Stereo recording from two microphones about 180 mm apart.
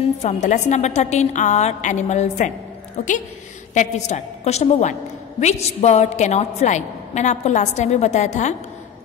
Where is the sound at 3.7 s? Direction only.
40° left (ahead or behind).